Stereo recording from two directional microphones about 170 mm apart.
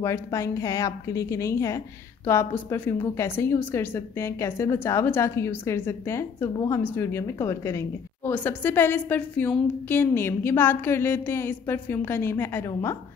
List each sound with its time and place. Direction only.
0.0 s a woman's voice: 15° left (ahead or behind)